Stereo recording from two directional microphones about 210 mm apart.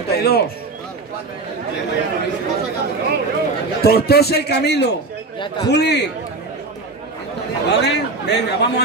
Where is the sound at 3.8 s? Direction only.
50° left (ahead or behind).